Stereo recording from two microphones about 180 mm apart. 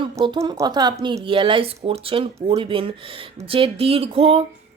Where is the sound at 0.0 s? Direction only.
25° right (ahead or behind).